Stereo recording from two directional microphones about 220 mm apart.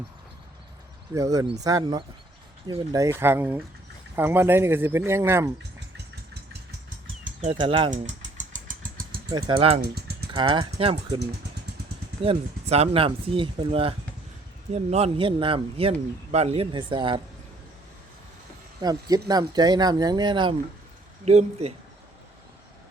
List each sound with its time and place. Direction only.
1.1 s speech: 15° right (ahead or behind)
7.4 s a man's voice: 25° right (ahead or behind)
7.9 s engine: 35° right (ahead or behind)
9.3 s a man's voice: 25° right (ahead or behind)
9.8 s typing: 45° right (ahead or behind)
10.3 s a man's voice: 25° right (ahead or behind)
12.2 s a man's voice: 25° right (ahead or behind)
18.8 s a man's voice: 15° right (ahead or behind)